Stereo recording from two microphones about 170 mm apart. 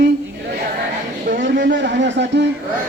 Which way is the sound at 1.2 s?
75° right (ahead or behind).